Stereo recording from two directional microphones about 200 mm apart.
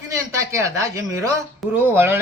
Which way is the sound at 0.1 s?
15° right (ahead or behind).